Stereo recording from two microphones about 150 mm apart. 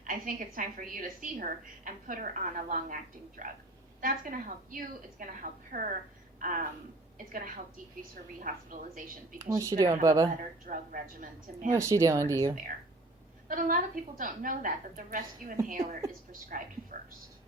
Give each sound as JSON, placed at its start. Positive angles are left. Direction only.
{"t": 0.0, "sound": "a woman's voice", "side_deg": -65}
{"t": 9.6, "sound": "speech", "side_deg": -20}
{"t": 10.7, "sound": "a woman's voice", "side_deg": -65}
{"t": 11.7, "sound": "speech", "side_deg": -20}
{"t": 13.5, "sound": "a woman's voice", "side_deg": -65}